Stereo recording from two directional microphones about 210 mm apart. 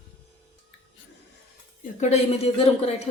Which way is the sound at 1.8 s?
35° left (ahead or behind).